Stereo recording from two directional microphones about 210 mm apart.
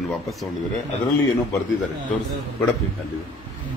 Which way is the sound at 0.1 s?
Centre (ahead or behind).